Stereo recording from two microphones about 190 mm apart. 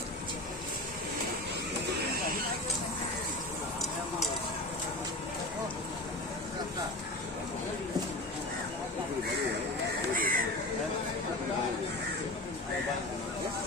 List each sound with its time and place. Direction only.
10.1 s crow: 50° right (ahead or behind)